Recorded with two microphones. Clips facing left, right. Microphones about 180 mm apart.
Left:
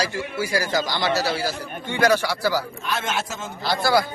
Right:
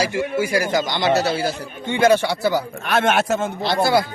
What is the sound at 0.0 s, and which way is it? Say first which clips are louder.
A man's voice: right 5 dB; 15° right (ahead or behind).